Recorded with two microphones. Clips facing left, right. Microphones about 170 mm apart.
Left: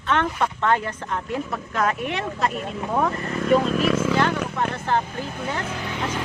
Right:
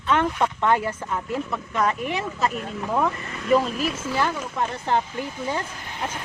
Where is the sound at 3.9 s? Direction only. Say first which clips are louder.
Left 6 dB; 75° left (ahead or behind).